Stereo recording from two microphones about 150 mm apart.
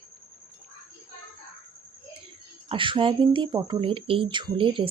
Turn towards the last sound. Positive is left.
turn(degrees=-35)  # may be behind; listen again after turning